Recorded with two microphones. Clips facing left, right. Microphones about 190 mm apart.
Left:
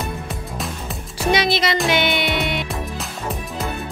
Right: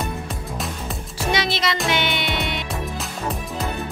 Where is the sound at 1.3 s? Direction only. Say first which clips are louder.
Left 4 dB; 10° left (ahead or behind).